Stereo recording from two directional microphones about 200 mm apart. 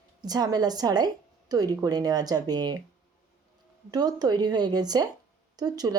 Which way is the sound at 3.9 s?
20° right (ahead or behind).